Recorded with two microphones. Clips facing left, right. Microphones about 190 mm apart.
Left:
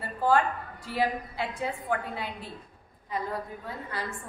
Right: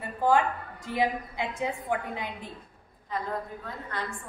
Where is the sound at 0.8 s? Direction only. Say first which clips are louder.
Right 1 dB; 20° right (ahead or behind).